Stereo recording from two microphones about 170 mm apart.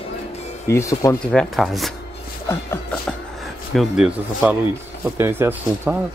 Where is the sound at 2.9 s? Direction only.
Centre (ahead or behind).